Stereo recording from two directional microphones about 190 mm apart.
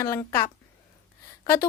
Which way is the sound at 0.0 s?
15° left (ahead or behind).